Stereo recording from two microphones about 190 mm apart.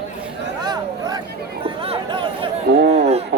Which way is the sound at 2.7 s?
60° right (ahead or behind).